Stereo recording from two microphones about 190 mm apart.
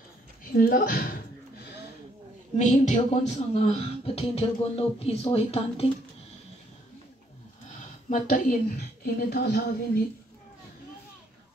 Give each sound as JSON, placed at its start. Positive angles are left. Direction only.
{"t": 0.5, "sound": "a woman's voice", "side_deg": 50}
{"t": 2.5, "sound": "speech", "side_deg": 40}
{"t": 8.1, "sound": "a woman's voice", "side_deg": 45}
{"t": 9.0, "sound": "a woman's voice", "side_deg": 60}